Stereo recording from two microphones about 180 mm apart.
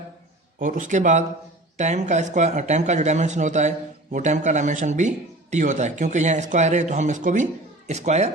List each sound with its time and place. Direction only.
0.6 s speech: 45° right (ahead or behind)